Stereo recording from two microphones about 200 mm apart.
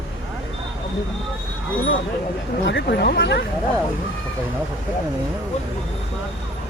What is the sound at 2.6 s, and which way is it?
Speech, 60° left (ahead or behind).